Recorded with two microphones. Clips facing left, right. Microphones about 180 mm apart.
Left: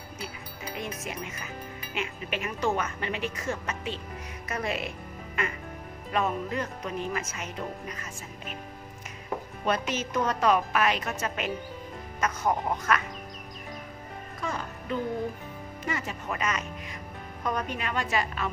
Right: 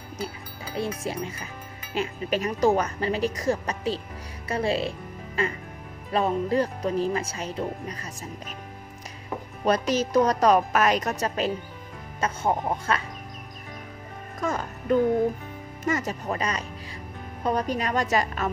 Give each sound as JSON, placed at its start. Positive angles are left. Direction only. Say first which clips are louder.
{"t": 0.7, "sound": "speech", "louder": "right 8 dB", "side_deg": -30}
{"t": 9.7, "sound": "speech", "louder": "right 6 dB", "side_deg": -35}
{"t": 14.4, "sound": "speech", "louder": "right 6 dB", "side_deg": -45}